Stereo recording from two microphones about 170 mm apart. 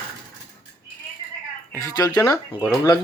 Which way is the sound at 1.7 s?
20° left (ahead or behind).